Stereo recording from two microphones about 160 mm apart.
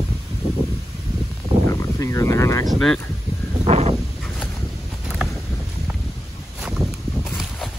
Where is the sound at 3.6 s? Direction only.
40° right (ahead or behind).